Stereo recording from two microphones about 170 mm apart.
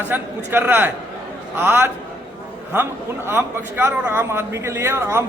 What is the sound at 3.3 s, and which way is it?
Speech, 15° right (ahead or behind).